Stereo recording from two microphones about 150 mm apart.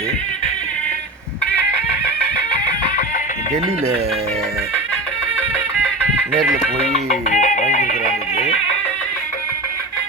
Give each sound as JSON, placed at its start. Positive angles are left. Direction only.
{"t": 6.6, "sound": "speech", "side_deg": 55}